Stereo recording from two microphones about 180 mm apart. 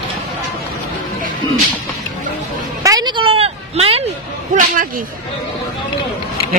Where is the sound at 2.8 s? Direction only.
20° right (ahead or behind).